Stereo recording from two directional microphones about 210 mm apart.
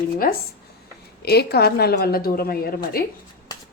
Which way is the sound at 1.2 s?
50° left (ahead or behind).